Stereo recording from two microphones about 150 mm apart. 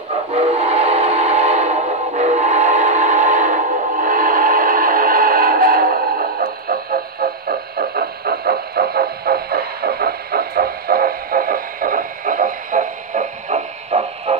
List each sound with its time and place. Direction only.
0.3 s train whistle: 40° right (ahead or behind); by 7.0 s 80° right
7.4 s music: 90° right; by 14.3 s 50° right (ahead or behind)